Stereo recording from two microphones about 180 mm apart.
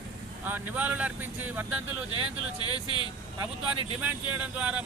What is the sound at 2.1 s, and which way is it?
Speech, 25° left (ahead or behind).